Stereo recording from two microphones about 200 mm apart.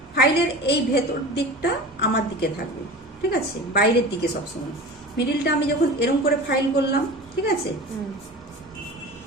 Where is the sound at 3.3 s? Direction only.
55° left (ahead or behind).